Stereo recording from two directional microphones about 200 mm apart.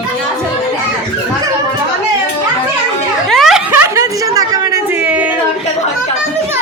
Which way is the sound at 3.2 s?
Centre (ahead or behind).